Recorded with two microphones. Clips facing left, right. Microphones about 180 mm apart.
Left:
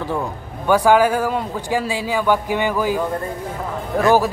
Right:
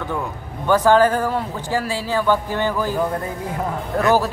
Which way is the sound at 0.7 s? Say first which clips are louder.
Even; 10° left (ahead or behind).